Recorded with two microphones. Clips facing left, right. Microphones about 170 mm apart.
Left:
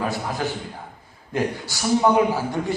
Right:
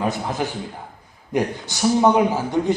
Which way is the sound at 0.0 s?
20° right (ahead or behind).